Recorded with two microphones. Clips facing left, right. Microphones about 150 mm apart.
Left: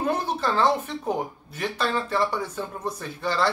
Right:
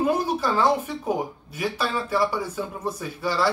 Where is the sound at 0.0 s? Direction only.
10° right (ahead or behind).